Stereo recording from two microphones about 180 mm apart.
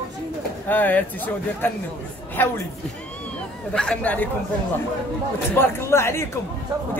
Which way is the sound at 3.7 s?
5° left (ahead or behind).